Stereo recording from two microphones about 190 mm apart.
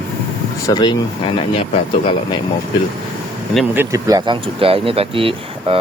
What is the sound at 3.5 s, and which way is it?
Speech, 10° right (ahead or behind).